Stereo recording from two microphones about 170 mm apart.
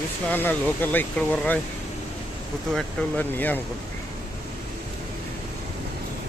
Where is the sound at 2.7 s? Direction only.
10° left (ahead or behind).